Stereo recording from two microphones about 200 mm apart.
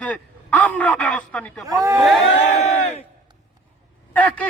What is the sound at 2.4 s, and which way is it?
Speech, 35° left (ahead or behind).